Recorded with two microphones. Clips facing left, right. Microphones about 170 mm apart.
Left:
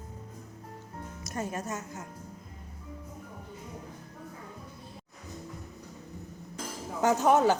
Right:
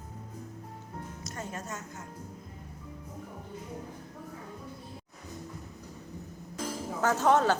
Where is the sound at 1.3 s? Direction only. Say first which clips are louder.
Left 6 dB; 20° left (ahead or behind).